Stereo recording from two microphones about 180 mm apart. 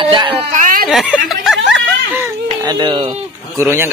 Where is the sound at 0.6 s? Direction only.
50° right (ahead or behind).